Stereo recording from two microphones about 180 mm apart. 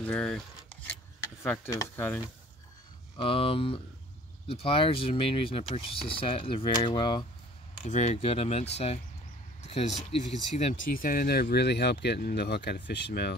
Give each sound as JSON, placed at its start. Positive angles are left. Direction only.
{"t": 0.0, "sound": "a sound", "side_deg": 5}
{"t": 1.4, "sound": "speech", "side_deg": 15}
{"t": 3.2, "sound": "speech", "side_deg": 30}
{"t": 7.8, "sound": "speech", "side_deg": 40}
{"t": 10.7, "sound": "speech", "side_deg": 50}